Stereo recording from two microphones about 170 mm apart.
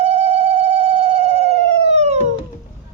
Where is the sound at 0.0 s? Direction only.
40° right (ahead or behind).